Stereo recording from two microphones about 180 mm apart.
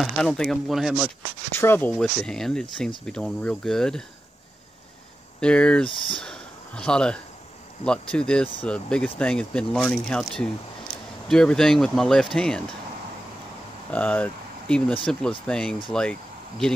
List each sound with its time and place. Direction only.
0.0 s speech: centre (ahead or behind)
1.5 s speech: 15° left (ahead or behind)
5.4 s speech: 5° left (ahead or behind)
13.9 s speech: 10° left (ahead or behind)